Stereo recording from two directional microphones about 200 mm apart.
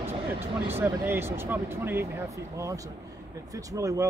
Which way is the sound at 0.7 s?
10° right (ahead or behind).